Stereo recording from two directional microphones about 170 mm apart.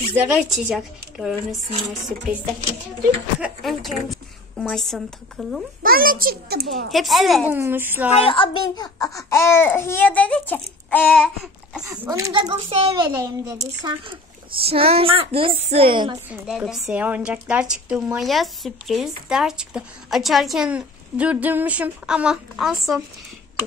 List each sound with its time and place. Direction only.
0.1 s a woman's voice: 5° right (ahead or behind)
3.3 s a woman's voice: centre (ahead or behind)
5.8 s a child's voice: 55° right (ahead or behind)
6.9 s a woman's voice: centre (ahead or behind)
7.5 s a woman's voice: 10° right (ahead or behind)
8.3 s a child's voice: 30° left (ahead or behind)
9.3 s speech: 15° left (ahead or behind); by 12.1 s 5° right (ahead or behind)
12.1 s speech: 20° right (ahead or behind)
14.6 s a woman's voice: 35° right (ahead or behind)
16.4 s a woman's voice: centre (ahead or behind)